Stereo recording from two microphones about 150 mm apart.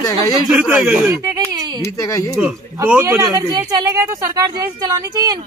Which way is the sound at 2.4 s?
10° right (ahead or behind).